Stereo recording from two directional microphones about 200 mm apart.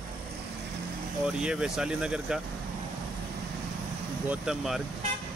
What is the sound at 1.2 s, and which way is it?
Speech, 5° right (ahead or behind).